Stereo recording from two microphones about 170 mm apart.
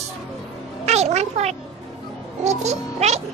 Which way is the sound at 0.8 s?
40° right (ahead or behind).